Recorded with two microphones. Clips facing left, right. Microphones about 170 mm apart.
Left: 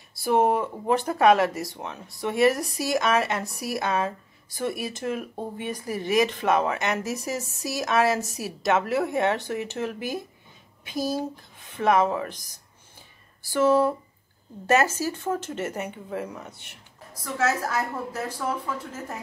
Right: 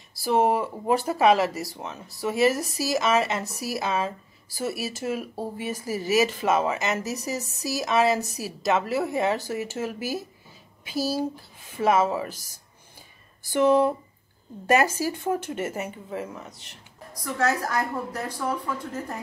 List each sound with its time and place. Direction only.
0.1 s speech: centre (ahead or behind)
13.4 s speech: 20° right (ahead or behind); by 18.2 s 5° left (ahead or behind)